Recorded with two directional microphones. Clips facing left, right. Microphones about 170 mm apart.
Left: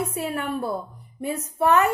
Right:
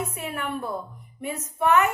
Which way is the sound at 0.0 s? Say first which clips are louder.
Left 4 dB; 35° left (ahead or behind).